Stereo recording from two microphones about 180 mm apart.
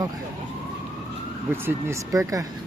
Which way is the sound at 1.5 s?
15° right (ahead or behind).